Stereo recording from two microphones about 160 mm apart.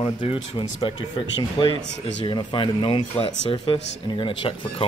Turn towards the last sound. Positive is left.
turn(degrees=30)  # may be behind; listen again after turning